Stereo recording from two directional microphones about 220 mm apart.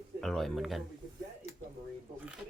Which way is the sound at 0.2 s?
Centre (ahead or behind).